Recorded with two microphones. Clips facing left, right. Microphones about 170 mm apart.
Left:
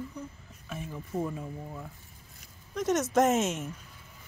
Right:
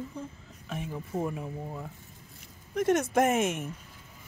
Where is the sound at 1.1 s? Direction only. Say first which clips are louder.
Even; 30° right (ahead or behind).